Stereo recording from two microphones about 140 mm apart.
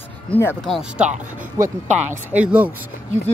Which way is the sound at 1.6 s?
20° right (ahead or behind).